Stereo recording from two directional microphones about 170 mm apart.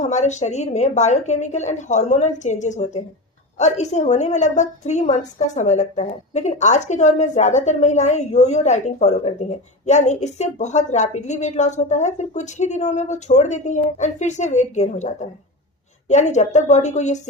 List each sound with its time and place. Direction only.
0.0 s a woman's voice: 45° left (ahead or behind)